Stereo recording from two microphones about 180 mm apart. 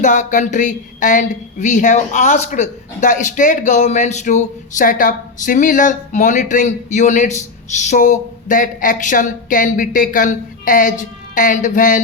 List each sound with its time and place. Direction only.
0.0 s a woman's voice: 45° left (ahead or behind)